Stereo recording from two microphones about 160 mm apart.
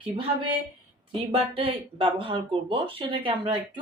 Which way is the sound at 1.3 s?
35° right (ahead or behind).